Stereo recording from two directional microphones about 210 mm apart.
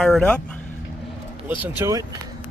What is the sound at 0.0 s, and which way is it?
Speech, 5° left (ahead or behind).